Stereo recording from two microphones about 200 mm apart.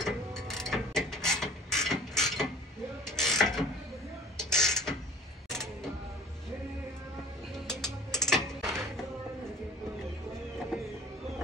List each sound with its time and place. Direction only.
0.0 s a sound: centre (ahead or behind)
5.5 s music: centre (ahead or behind)
7.5 s music: centre (ahead or behind)